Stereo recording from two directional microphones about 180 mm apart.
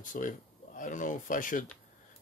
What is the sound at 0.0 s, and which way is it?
Speech, 45° left (ahead or behind).